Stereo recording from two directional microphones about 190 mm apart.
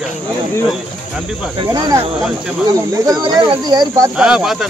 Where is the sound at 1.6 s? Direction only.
20° right (ahead or behind).